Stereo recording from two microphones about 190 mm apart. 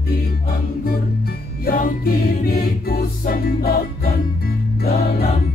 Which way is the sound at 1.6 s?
50° left (ahead or behind).